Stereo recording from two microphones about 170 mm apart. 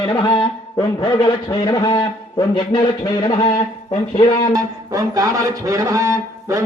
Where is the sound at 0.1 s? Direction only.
30° left (ahead or behind).